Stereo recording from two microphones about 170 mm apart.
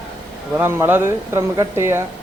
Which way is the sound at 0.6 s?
10° right (ahead or behind).